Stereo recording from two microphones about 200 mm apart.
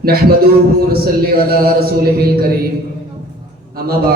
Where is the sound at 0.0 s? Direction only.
50° right (ahead or behind).